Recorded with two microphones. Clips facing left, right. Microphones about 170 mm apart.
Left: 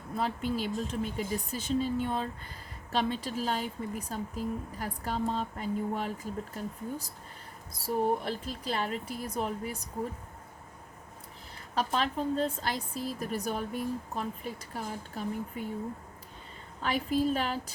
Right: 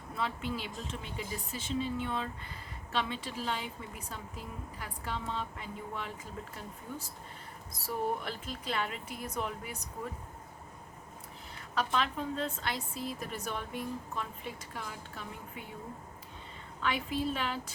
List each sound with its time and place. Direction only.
0.2 s a woman's voice: 40° left (ahead or behind)
7.9 s a woman's voice: 35° left (ahead or behind)
11.7 s a woman's voice: 35° left (ahead or behind)
16.8 s a woman's voice: 40° left (ahead or behind)